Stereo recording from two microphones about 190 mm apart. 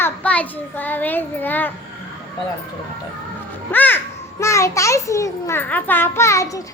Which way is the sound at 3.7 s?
10° left (ahead or behind).